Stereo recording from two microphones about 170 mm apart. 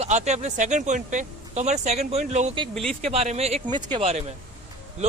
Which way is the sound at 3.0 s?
35° right (ahead or behind).